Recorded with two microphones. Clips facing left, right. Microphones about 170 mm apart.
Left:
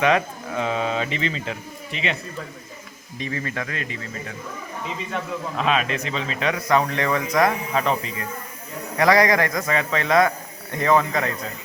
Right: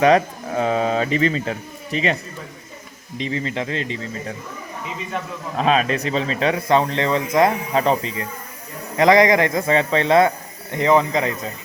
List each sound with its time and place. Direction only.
0.0 s speech: 40° right (ahead or behind)
3.2 s a man's voice: 20° right (ahead or behind)
5.5 s a man's voice: 40° right (ahead or behind)
9.0 s a man's voice: 20° right (ahead or behind)